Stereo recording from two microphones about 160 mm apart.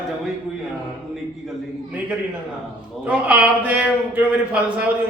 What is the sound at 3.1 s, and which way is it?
A man's voice, 10° right (ahead or behind).